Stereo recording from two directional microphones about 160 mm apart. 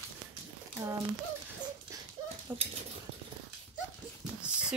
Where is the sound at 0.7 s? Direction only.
20° right (ahead or behind).